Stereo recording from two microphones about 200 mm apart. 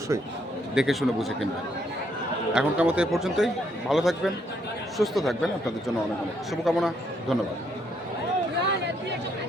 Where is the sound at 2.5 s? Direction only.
5° right (ahead or behind).